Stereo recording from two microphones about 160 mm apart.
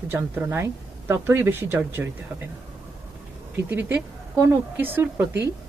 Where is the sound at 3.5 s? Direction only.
15° right (ahead or behind).